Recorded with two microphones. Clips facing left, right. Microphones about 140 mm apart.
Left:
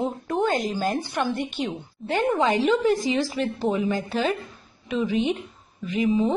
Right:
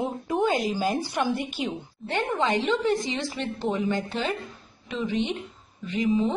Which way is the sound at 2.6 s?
25° right (ahead or behind).